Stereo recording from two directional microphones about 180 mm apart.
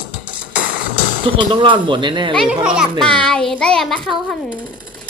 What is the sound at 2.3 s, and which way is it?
A child's voice, centre (ahead or behind).